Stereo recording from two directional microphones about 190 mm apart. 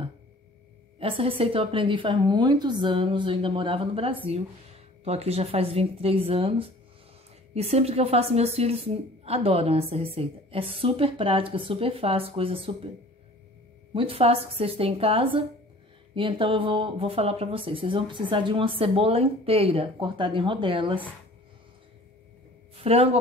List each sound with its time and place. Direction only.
0.9 s a woman's voice: 30° right (ahead or behind)
13.9 s speech: 30° right (ahead or behind)
22.8 s speech: 30° right (ahead or behind)